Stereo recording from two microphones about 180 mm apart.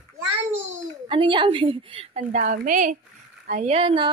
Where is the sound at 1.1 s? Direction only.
25° right (ahead or behind).